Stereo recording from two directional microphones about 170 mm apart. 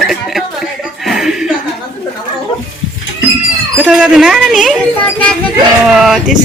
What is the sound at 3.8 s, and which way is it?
Speech, 5° right (ahead or behind).